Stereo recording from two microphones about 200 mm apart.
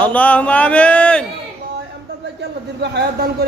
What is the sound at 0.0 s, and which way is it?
Speech, 5° left (ahead or behind).